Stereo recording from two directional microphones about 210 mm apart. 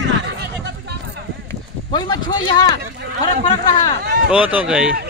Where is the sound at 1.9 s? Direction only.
20° left (ahead or behind).